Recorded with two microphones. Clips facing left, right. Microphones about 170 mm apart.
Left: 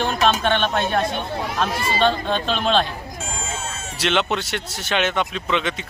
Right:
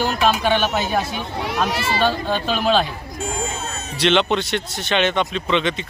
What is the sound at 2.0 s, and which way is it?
Speech, 5° right (ahead or behind).